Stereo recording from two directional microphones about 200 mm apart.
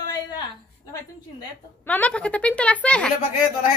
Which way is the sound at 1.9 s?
5° left (ahead or behind).